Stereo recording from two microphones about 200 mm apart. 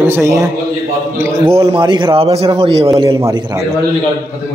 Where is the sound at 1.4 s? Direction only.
30° right (ahead or behind).